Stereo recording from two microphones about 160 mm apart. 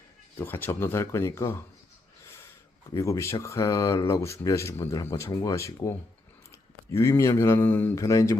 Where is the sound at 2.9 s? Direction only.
20° left (ahead or behind).